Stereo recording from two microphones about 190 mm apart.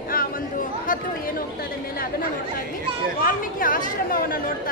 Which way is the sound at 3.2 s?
45° left (ahead or behind).